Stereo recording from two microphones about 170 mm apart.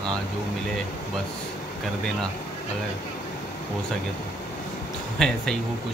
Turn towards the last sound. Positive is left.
turn(degrees=5)  # may be behind; listen again after turning